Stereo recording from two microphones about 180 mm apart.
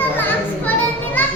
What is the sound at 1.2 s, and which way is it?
Children playing, 10° left (ahead or behind).